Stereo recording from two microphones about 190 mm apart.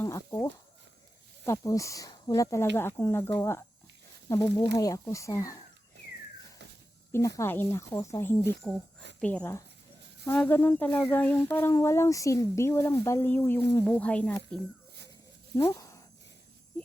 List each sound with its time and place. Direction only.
0.0 s speech: 15° left (ahead or behind)
1.5 s speech: 15° left (ahead or behind)
7.1 s speech: 15° left (ahead or behind)
15.5 s a sound: 20° left (ahead or behind)